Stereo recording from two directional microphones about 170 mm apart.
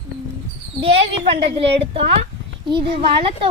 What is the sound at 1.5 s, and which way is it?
A child's voice, 35° right (ahead or behind).